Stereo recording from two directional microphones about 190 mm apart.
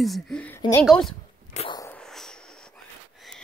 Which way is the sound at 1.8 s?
5° left (ahead or behind).